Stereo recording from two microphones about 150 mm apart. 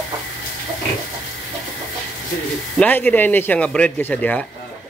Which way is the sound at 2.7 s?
10° left (ahead or behind).